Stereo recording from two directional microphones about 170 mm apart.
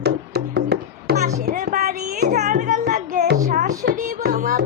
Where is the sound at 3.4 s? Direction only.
55° right (ahead or behind).